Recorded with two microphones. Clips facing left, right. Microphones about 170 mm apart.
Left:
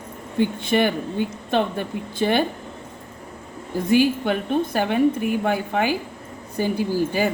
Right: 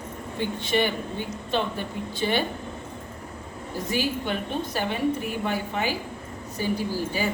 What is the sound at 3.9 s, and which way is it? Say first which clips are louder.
A woman's voice: left 9 dB; 55° left (ahead or behind).